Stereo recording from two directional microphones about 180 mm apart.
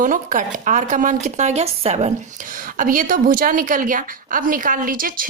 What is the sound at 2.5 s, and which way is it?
A woman's voice, 50° right (ahead or behind).